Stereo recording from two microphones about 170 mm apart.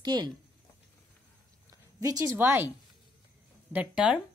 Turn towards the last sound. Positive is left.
turn(degrees=-10)  # may be behind; listen again after turning